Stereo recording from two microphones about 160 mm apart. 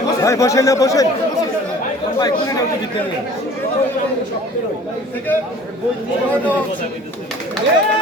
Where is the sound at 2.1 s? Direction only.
25° left (ahead or behind).